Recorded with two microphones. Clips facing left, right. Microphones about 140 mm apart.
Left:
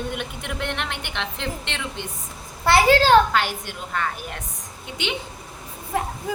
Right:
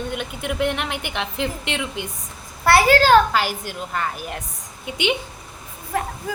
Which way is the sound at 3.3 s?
5° right (ahead or behind).